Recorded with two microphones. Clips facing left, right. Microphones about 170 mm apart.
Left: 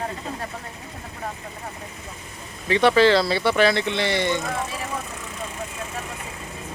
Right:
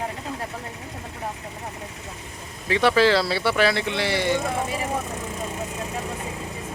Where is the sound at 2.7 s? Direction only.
5° right (ahead or behind).